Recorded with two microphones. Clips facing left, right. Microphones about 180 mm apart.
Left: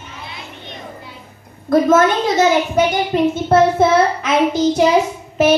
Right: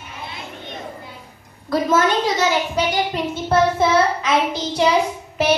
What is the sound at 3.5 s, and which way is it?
Child singing, 50° left (ahead or behind).